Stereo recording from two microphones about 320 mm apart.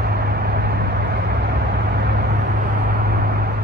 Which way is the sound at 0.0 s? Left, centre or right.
Right.